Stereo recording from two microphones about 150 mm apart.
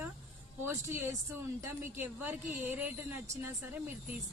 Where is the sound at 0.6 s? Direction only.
15° right (ahead or behind).